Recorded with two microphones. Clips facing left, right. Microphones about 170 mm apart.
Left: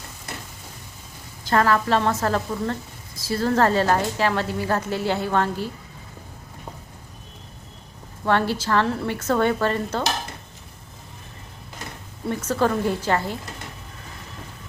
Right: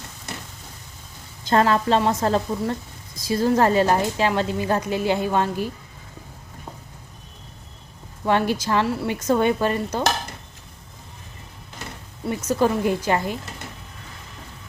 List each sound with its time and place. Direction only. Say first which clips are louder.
1.5 s a woman's voice: right 1 dB; 25° right (ahead or behind)
8.2 s a woman's voice: right 1 dB; 15° right (ahead or behind)
12.3 s a woman's voice: right 1 dB; 10° right (ahead or behind)